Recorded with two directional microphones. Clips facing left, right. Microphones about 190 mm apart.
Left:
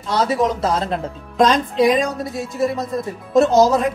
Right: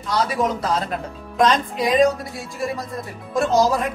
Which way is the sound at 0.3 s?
25° left (ahead or behind).